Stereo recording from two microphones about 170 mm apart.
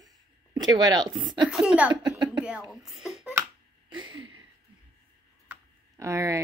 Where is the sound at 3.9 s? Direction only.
30° right (ahead or behind).